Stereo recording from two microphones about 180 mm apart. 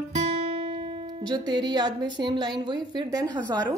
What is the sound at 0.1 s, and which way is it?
A woman's voice, 35° right (ahead or behind).